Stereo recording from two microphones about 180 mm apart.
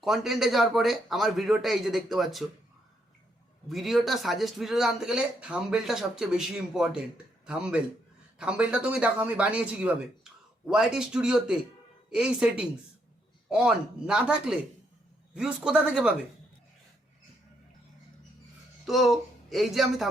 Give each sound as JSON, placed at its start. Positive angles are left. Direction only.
{"t": 0.0, "sound": "speech", "side_deg": 0}
{"t": 3.7, "sound": "speech", "side_deg": 0}
{"t": 18.9, "sound": "speech", "side_deg": 0}